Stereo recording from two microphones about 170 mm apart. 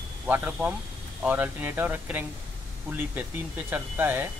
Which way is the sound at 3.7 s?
10° right (ahead or behind).